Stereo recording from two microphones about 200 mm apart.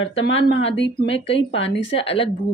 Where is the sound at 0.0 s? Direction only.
70° left (ahead or behind).